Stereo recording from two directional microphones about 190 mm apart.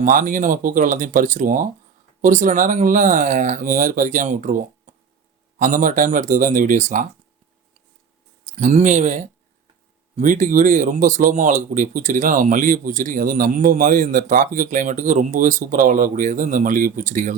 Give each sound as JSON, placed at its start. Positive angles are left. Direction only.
{"t": 0.0, "sound": "speech", "side_deg": -45}
{"t": 8.4, "sound": "speech", "side_deg": -40}